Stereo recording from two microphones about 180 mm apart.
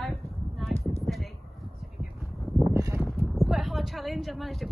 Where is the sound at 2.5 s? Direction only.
20° right (ahead or behind).